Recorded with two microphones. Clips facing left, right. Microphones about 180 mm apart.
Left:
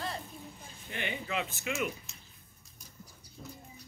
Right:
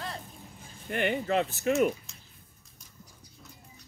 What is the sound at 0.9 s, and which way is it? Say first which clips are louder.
Speech: right 9 dB; 55° right (ahead or behind).